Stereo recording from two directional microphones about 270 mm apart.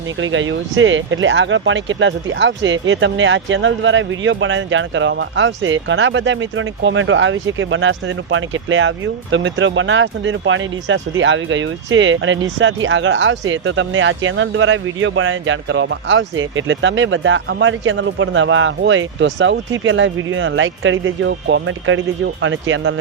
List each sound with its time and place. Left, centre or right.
0.2 s speech: right